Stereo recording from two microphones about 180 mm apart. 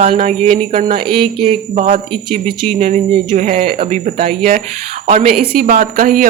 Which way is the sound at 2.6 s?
45° right (ahead or behind).